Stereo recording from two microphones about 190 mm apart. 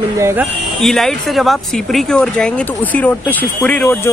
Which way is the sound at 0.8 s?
Centre (ahead or behind).